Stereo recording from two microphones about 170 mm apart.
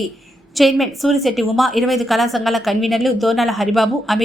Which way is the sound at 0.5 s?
Centre (ahead or behind).